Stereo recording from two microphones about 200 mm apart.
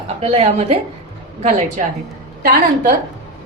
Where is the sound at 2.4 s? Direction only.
45° right (ahead or behind).